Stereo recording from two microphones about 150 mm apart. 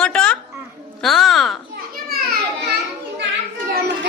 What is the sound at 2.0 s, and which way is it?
Children playing, 90° right.